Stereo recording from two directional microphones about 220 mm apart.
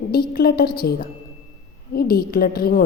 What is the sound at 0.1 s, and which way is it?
A woman's voice, 45° left (ahead or behind).